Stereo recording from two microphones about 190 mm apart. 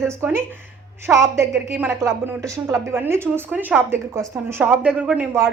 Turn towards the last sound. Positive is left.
turn(degrees=-10)  # may be behind; listen again after turning